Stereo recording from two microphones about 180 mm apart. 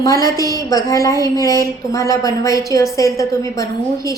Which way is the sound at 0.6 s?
20° left (ahead or behind).